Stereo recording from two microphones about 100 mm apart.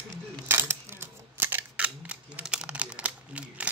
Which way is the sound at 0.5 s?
25° right (ahead or behind).